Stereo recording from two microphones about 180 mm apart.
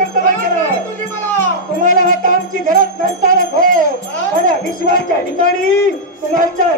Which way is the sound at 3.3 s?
50° right (ahead or behind).